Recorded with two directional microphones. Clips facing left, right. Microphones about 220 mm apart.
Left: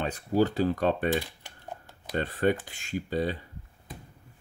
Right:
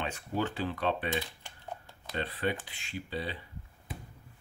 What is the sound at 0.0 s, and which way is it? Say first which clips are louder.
Speech: left 8 dB; 35° left (ahead or behind).